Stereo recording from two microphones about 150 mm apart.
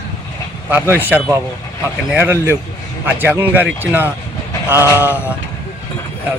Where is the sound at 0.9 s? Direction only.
10° right (ahead or behind).